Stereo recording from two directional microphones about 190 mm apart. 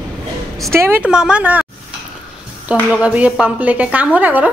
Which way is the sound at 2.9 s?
5° right (ahead or behind).